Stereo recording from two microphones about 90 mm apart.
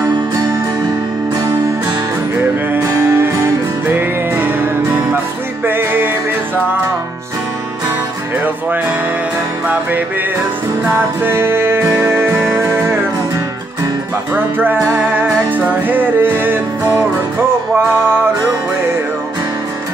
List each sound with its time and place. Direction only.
2.8 s music: 35° right (ahead or behind)
5.7 s music: 25° right (ahead or behind)
11.0 s music: 25° right (ahead or behind)
14.3 s music: 20° right (ahead or behind)